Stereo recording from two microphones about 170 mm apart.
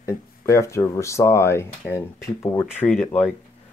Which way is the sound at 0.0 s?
15° left (ahead or behind).